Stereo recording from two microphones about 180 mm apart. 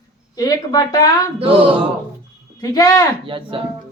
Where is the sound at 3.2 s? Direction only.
30° right (ahead or behind).